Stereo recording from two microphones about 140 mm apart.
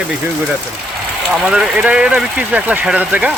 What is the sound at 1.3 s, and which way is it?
Speech, centre (ahead or behind).